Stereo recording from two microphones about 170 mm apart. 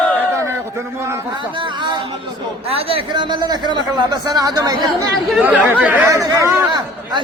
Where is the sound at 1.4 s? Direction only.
30° right (ahead or behind).